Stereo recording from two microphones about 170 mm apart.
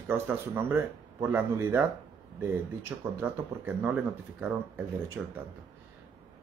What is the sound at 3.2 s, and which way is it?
Speech, 10° right (ahead or behind).